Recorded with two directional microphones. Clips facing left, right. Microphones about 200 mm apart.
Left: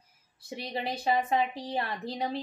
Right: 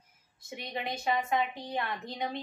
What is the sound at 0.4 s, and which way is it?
A woman's voice, 30° left (ahead or behind).